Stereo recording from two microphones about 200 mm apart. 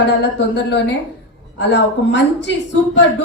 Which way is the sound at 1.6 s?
60° left (ahead or behind).